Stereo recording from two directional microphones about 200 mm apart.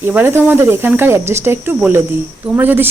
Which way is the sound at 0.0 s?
10° right (ahead or behind).